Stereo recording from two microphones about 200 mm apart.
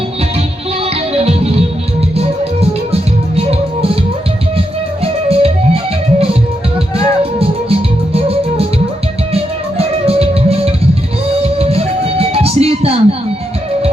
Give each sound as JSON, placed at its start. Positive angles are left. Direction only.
{"t": 1.1, "sound": "music", "side_deg": -30}
{"t": 5.0, "sound": "music", "side_deg": -30}